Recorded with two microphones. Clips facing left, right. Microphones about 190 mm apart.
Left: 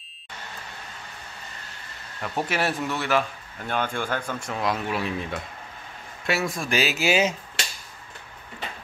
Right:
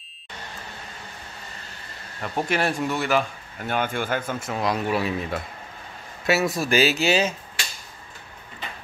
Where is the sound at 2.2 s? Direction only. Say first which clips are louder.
Right 2 dB; 5° left (ahead or behind).